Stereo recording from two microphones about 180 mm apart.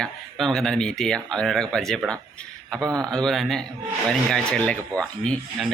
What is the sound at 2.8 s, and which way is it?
Speech, 20° right (ahead or behind).